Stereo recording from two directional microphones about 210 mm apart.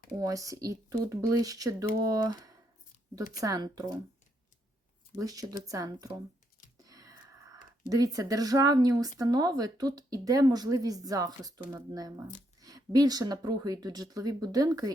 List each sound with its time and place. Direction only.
0.2 s speech: 15° right (ahead or behind)
5.1 s speech: 15° right (ahead or behind)